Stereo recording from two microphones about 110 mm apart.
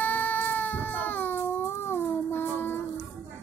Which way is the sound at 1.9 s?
20° left (ahead or behind).